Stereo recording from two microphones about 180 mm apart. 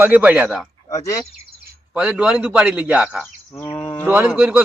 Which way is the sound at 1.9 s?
5° right (ahead or behind).